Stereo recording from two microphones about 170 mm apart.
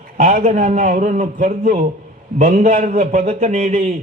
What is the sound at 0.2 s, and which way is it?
A man's voice, 50° right (ahead or behind).